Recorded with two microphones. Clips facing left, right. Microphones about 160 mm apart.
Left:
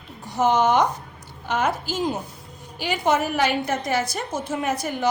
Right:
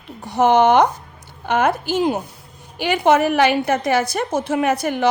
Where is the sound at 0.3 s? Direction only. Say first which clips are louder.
Right 5 dB; 65° right (ahead or behind).